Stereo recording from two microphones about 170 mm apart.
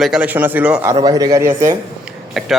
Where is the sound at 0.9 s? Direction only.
20° right (ahead or behind).